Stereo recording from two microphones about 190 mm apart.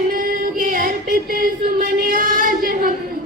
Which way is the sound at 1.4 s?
50° right (ahead or behind).